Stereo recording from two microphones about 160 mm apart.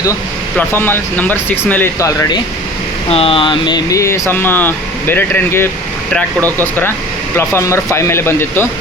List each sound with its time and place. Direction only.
0.5 s speech: 15° left (ahead or behind)
3.1 s speech: 35° left (ahead or behind); by 8.6 s 15° left (ahead or behind)